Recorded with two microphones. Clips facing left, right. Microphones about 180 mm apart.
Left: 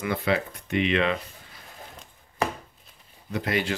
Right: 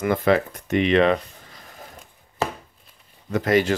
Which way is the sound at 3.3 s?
45° right (ahead or behind).